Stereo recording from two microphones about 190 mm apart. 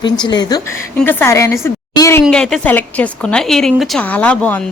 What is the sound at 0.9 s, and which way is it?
Speech, 10° left (ahead or behind).